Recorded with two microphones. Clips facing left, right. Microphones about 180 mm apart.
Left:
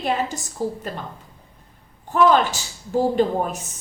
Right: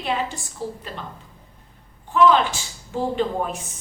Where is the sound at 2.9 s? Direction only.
40° left (ahead or behind).